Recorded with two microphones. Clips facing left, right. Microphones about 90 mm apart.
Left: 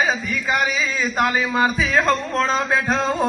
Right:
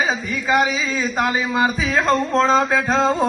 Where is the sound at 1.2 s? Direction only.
25° right (ahead or behind).